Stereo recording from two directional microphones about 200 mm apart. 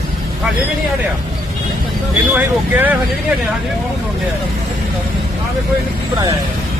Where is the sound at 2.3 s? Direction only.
10° right (ahead or behind).